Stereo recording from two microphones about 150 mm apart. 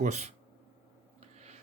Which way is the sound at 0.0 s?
50° right (ahead or behind).